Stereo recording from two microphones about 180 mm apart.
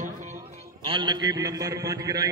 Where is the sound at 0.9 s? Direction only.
25° right (ahead or behind).